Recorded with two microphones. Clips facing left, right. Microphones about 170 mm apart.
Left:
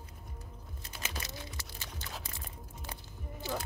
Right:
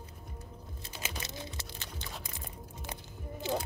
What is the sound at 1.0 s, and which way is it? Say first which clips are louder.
Music: right 1 dB; 25° right (ahead or behind).